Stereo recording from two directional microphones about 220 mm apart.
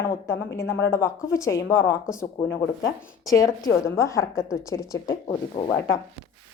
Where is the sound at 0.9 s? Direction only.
15° left (ahead or behind).